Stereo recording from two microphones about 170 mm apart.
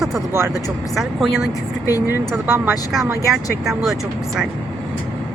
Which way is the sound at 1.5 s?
20° left (ahead or behind).